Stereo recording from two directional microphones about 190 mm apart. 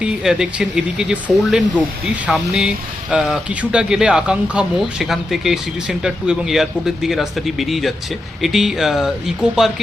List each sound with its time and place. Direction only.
0.0 s speech: 5° right (ahead or behind)